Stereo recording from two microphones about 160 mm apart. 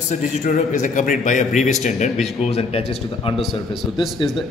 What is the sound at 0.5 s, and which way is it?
A man's voice, 55° left (ahead or behind).